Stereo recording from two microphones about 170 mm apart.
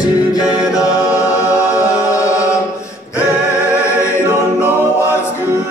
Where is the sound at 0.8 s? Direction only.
20° left (ahead or behind).